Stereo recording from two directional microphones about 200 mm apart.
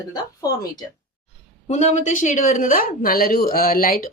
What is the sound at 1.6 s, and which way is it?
Speech, 35° left (ahead or behind).